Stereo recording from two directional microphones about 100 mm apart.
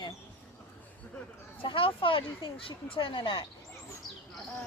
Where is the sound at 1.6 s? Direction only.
60° left (ahead or behind).